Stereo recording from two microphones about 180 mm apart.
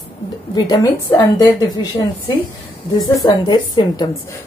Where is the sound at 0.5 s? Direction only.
20° left (ahead or behind).